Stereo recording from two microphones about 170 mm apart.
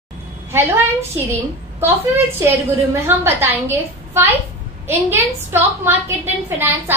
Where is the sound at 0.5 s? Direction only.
15° right (ahead or behind).